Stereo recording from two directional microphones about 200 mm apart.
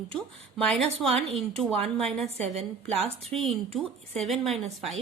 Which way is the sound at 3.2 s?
Centre (ahead or behind).